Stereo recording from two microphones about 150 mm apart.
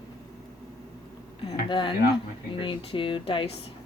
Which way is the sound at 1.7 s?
35° left (ahead or behind).